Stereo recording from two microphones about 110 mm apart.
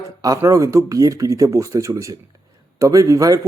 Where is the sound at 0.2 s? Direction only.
30° right (ahead or behind).